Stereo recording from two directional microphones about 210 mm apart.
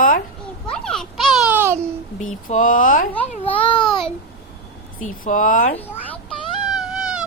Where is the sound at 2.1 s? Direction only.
35° left (ahead or behind).